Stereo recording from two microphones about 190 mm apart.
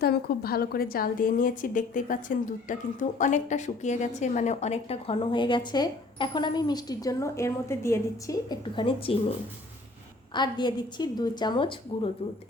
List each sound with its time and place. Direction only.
0.0 s a woman's voice: 55° left (ahead or behind); by 9.1 s 25° left (ahead or behind)
10.3 s a woman's voice: 25° left (ahead or behind)